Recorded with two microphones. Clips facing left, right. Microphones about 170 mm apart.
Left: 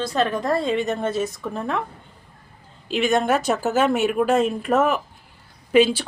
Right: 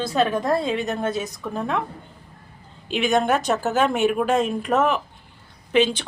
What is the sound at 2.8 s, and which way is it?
A woman's voice, centre (ahead or behind).